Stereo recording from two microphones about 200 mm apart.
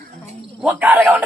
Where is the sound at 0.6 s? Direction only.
5° right (ahead or behind).